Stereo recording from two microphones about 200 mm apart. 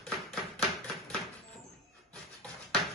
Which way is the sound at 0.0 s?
Centre (ahead or behind).